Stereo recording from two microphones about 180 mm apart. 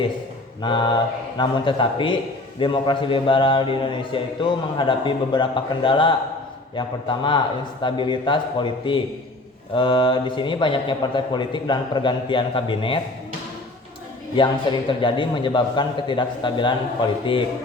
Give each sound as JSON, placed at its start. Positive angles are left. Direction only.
{"t": 0.6, "sound": "a man's voice", "side_deg": 25}
{"t": 14.3, "sound": "a man's voice", "side_deg": 25}